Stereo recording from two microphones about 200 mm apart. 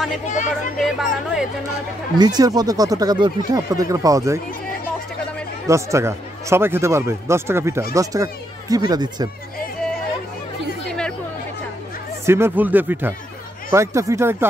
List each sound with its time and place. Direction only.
0.7 s speech: centre (ahead or behind)
2.1 s speech: 20° right (ahead or behind)
5.7 s speech: 15° right (ahead or behind)
10.9 s chatter: 5° left (ahead or behind)
12.3 s speech: 10° right (ahead or behind)